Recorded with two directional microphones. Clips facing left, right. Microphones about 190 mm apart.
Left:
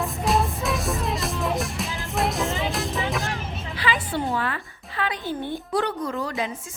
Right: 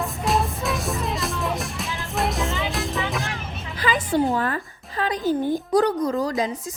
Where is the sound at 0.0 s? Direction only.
Centre (ahead or behind).